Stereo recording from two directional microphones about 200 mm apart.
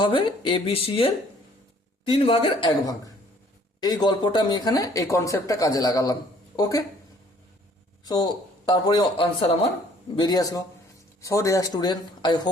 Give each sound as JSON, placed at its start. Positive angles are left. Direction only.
{"t": 0.0, "sound": "speech", "side_deg": 25}
{"t": 8.0, "sound": "speech", "side_deg": 20}